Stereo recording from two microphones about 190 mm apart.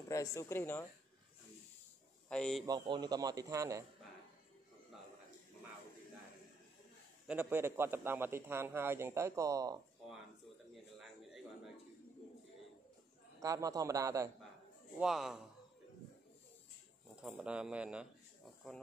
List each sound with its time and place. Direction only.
0.1 s speech: 15° left (ahead or behind)
2.2 s speech: 5° left (ahead or behind)
2.6 s speech: 20° right (ahead or behind)
7.2 s a man's voice: 10° right (ahead or behind)
10.7 s bird: centre (ahead or behind)
13.4 s a man's voice: 15° right (ahead or behind)
15.0 s speech: centre (ahead or behind)
17.2 s speech: 5° right (ahead or behind)